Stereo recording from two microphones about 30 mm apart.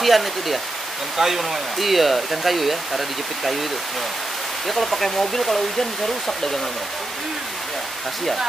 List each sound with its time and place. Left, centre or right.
0.0 s speech: centre
4.6 s speech: centre